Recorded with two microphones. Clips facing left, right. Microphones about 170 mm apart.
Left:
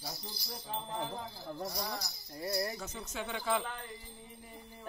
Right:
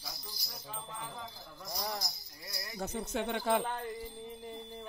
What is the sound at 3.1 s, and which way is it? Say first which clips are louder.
Speech: right 3 dB; 55° right (ahead or behind).